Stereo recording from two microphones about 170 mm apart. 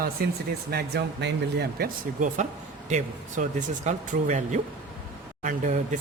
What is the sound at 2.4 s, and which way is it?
Speech, 45° right (ahead or behind).